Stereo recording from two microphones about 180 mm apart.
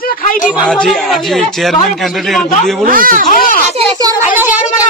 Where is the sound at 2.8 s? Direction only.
50° right (ahead or behind).